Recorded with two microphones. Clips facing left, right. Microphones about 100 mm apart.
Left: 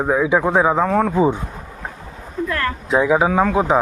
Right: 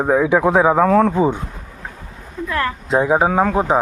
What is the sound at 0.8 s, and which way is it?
Speech, 70° right (ahead or behind).